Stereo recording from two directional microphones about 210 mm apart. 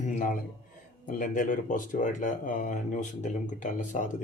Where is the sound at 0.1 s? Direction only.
35° left (ahead or behind).